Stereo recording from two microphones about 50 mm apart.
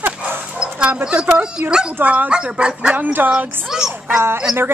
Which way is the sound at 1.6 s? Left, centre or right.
Right.